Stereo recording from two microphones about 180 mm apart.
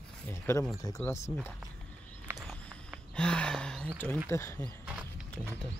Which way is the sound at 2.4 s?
5° left (ahead or behind).